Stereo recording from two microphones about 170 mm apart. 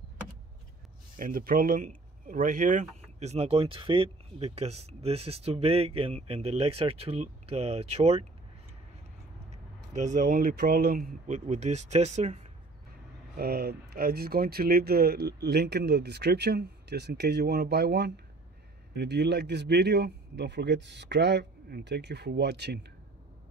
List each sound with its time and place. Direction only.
1.1 s speech: 55° right (ahead or behind); by 8.3 s 40° right (ahead or behind)
9.5 s speech: 45° right (ahead or behind)
13.4 s speech: 65° right (ahead or behind)
18.9 s speech: 85° right